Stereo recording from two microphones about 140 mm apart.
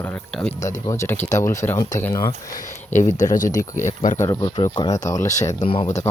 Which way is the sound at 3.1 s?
60° left (ahead or behind).